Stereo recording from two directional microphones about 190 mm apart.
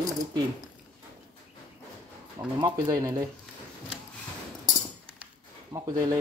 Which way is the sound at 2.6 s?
20° right (ahead or behind).